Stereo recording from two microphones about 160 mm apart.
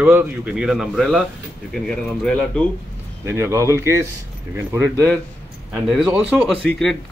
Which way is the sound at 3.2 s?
15° right (ahead or behind).